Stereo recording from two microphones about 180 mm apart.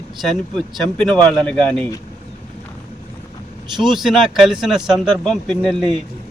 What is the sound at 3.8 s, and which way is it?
Speech, centre (ahead or behind).